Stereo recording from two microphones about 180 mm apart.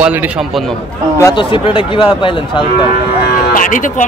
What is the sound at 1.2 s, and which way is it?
Speech, 25° left (ahead or behind).